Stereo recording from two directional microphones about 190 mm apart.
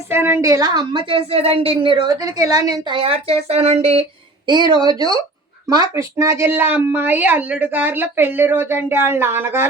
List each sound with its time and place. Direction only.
0.1 s a woman's voice: 15° right (ahead or behind)